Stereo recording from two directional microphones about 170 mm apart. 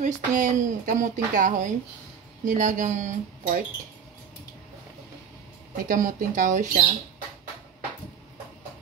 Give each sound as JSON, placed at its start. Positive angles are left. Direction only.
{"t": 0.0, "sound": "speech", "side_deg": -50}
{"t": 5.9, "sound": "speech", "side_deg": -50}